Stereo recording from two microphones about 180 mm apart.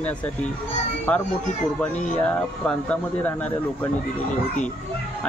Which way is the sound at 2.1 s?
5° left (ahead or behind).